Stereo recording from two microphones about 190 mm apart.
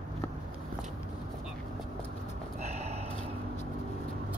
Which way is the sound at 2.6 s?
35° right (ahead or behind).